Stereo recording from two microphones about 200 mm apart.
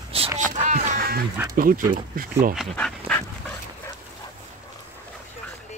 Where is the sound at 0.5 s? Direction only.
40° right (ahead or behind).